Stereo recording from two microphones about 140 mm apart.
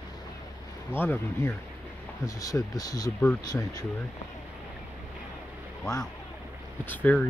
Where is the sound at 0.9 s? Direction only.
15° left (ahead or behind).